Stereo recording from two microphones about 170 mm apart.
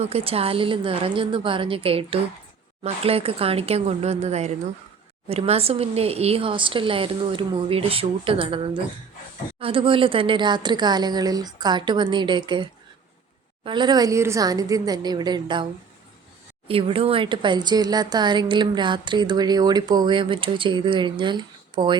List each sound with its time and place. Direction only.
0.0 s speech: 35° right (ahead or behind)
13.7 s speech: 25° right (ahead or behind)
16.6 s speech: 35° right (ahead or behind)